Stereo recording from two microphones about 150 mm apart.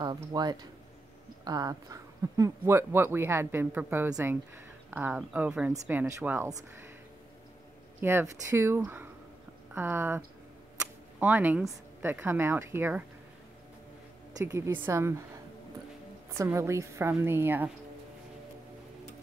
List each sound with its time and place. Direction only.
0.0 s speech: 25° right (ahead or behind)
8.0 s speech: 15° right (ahead or behind)
14.4 s speech: 15° right (ahead or behind)
16.3 s speech: 20° right (ahead or behind)